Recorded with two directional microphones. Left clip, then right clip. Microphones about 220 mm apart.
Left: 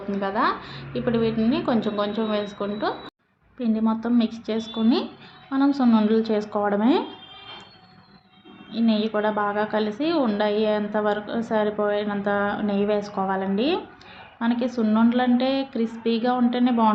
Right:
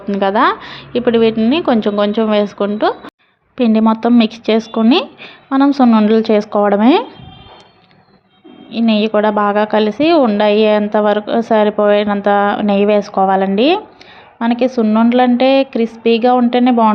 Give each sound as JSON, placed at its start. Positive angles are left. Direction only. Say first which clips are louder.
{"t": 0.1, "sound": "a woman's voice", "louder": "right 11 dB", "side_deg": -40}
{"t": 8.7, "sound": "a woman's voice", "louder": "right 10 dB", "side_deg": -35}